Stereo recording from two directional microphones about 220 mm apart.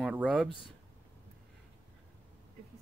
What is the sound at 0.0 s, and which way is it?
Speech, 5° right (ahead or behind).